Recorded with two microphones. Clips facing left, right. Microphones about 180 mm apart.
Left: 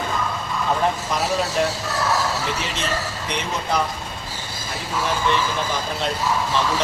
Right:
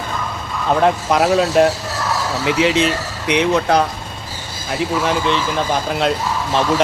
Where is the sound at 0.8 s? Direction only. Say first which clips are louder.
Right 7 dB; 80° right.